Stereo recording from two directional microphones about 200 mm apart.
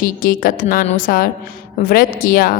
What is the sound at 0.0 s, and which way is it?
A woman's voice, 45° left (ahead or behind).